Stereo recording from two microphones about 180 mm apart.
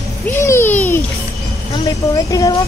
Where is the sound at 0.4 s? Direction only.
15° left (ahead or behind).